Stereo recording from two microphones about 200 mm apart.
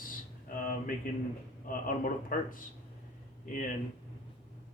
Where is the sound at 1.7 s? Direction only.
45° left (ahead or behind).